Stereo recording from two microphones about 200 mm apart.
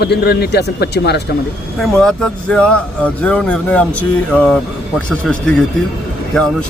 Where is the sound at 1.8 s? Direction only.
5° left (ahead or behind).